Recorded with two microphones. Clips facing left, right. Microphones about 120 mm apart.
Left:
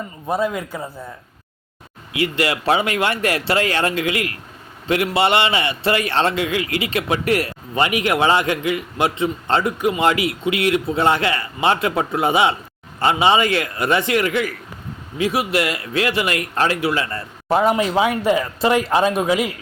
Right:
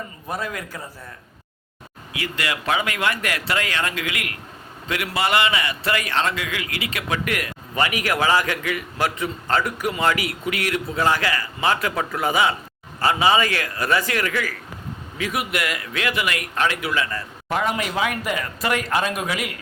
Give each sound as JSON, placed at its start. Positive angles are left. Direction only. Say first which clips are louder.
{"t": 0.3, "sound": "a man's voice", "louder": "left 8 dB", "side_deg": 25}
{"t": 2.1, "sound": "a man's voice", "louder": "left 7 dB", "side_deg": 25}